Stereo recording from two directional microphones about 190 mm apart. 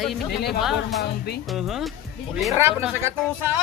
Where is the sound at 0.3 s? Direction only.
60° left (ahead or behind).